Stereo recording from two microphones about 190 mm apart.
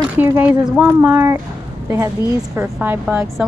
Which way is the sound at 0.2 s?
10° right (ahead or behind).